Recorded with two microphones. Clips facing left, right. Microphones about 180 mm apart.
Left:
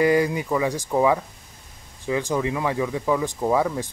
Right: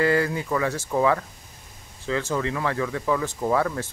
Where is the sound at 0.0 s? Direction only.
15° left (ahead or behind).